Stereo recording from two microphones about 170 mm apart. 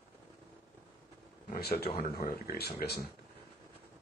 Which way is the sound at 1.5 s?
70° left (ahead or behind).